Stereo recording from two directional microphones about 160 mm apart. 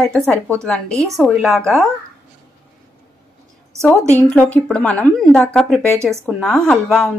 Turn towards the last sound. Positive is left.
turn(degrees=5)  # may be behind; listen again after turning